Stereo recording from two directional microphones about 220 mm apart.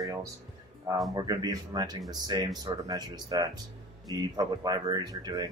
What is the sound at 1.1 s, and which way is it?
Speech, 15° right (ahead or behind).